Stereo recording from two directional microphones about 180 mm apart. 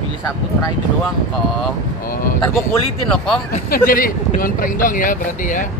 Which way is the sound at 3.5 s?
50° left (ahead or behind).